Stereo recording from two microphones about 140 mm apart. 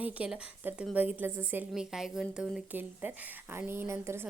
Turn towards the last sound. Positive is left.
turn(degrees=-15)  # may be behind; listen again after turning